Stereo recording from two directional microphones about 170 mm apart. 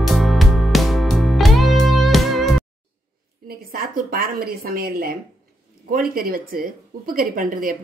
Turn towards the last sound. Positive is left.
turn(degrees=-55)  # may be behind; listen again after turning